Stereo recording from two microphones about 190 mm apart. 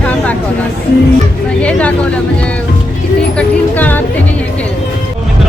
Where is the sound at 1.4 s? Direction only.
5° left (ahead or behind).